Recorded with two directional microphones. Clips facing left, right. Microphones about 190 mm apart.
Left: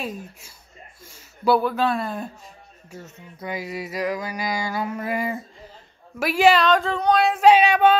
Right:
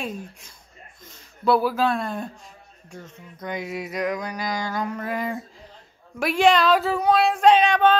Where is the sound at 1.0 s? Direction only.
10° left (ahead or behind).